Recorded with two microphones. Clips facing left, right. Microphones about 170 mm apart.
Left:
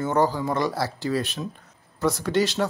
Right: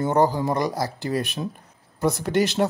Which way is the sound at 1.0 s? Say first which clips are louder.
Even; 55° right (ahead or behind).